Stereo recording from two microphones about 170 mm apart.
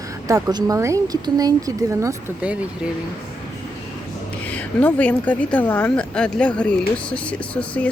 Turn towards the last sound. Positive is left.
turn(degrees=5)  # may be behind; listen again after turning